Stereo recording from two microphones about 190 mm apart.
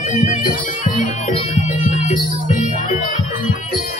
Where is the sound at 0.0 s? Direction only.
35° left (ahead or behind).